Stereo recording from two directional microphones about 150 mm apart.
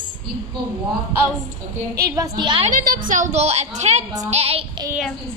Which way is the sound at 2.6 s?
65° right (ahead or behind).